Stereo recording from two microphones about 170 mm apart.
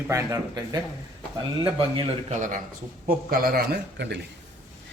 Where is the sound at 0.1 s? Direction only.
20° right (ahead or behind).